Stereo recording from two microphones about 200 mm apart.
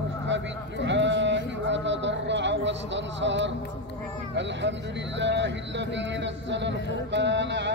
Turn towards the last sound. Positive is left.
turn(degrees=-60)  # may be behind; listen again after turning